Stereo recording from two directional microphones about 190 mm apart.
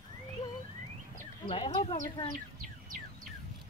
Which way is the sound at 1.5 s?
30° left (ahead or behind).